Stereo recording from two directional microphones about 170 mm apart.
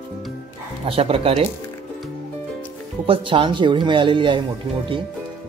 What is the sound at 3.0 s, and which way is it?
Speech, 30° right (ahead or behind).